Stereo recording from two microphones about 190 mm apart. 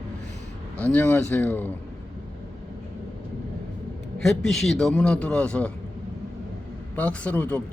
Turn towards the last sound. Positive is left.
turn(degrees=10)  # may be behind; listen again after turning